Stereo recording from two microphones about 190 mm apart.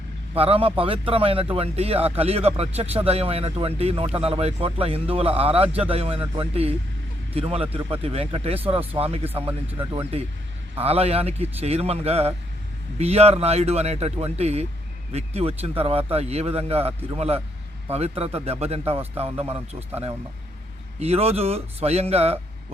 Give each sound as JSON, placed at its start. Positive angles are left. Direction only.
{"t": 0.3, "sound": "speech", "side_deg": -30}
{"t": 21.0, "sound": "speech", "side_deg": -30}